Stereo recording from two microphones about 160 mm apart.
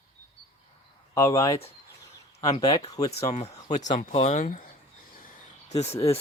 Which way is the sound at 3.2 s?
40° left (ahead or behind).